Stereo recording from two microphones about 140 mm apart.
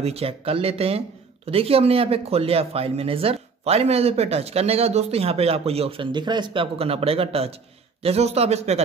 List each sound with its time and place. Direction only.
0.0 s speech: 45° right (ahead or behind)